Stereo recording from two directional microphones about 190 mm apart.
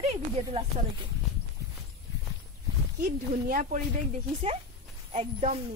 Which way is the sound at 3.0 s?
45° right (ahead or behind).